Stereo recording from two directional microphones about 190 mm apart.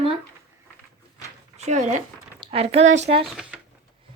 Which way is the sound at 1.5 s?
40° right (ahead or behind).